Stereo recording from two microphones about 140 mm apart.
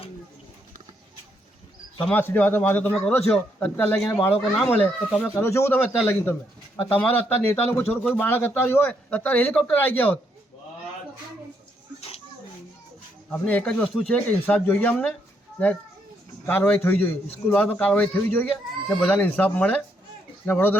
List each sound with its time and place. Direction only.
2.0 s a man's voice: 15° left (ahead or behind)
11.9 s a sound: 45° left (ahead or behind)
13.3 s a man's voice: 10° left (ahead or behind)